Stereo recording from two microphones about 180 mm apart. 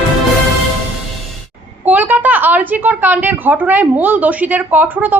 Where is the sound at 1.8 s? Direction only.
10° right (ahead or behind).